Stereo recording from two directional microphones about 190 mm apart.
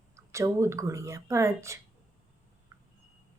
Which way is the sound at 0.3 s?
15° right (ahead or behind).